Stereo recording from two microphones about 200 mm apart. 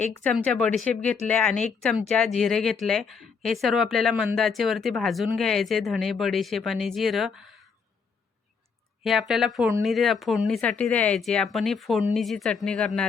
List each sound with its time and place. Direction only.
0.0 s speech: 10° left (ahead or behind)
9.0 s speech: centre (ahead or behind)